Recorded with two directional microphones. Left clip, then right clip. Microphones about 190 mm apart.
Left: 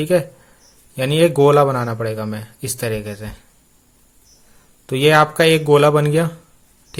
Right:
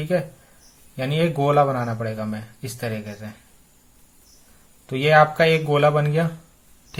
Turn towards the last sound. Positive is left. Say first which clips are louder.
# left 5 dB
turn(degrees=45)  # may be behind; listen again after turning